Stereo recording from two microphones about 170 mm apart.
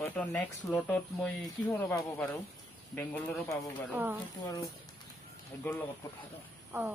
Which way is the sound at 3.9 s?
10° right (ahead or behind).